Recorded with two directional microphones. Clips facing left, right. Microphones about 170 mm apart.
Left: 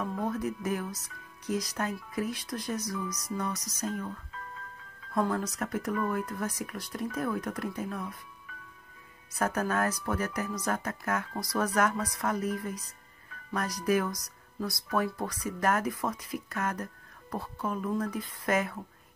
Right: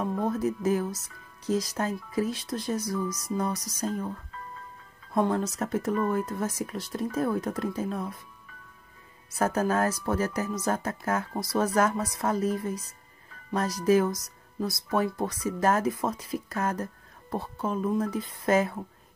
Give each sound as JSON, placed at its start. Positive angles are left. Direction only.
{"t": 0.0, "sound": "speech", "side_deg": -30}
{"t": 5.1, "sound": "speech", "side_deg": -25}
{"t": 9.3, "sound": "speech", "side_deg": -25}